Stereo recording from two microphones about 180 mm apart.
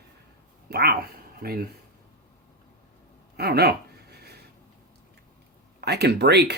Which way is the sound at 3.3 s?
60° right (ahead or behind).